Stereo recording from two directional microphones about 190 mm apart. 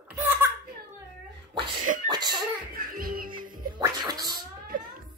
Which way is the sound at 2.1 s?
20° right (ahead or behind).